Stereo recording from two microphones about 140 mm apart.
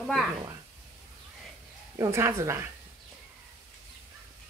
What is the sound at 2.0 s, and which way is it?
Cutlery, 20° right (ahead or behind).